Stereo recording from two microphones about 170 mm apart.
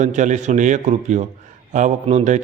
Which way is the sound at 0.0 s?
45° right (ahead or behind).